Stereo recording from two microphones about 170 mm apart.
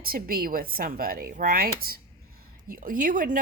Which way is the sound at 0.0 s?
60° right (ahead or behind).